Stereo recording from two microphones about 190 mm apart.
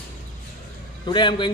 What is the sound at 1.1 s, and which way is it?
Speech, 25° left (ahead or behind).